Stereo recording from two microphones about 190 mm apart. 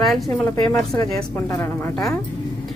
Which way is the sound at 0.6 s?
15° left (ahead or behind).